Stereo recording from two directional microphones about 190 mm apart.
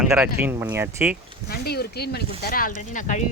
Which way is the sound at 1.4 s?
55° left (ahead or behind).